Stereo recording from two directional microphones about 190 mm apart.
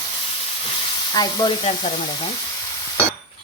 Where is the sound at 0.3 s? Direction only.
30° left (ahead or behind).